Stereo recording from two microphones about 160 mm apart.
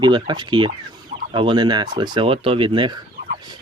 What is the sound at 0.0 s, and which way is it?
Speech, 30° right (ahead or behind).